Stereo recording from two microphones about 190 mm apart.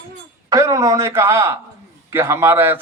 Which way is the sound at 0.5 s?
15° right (ahead or behind).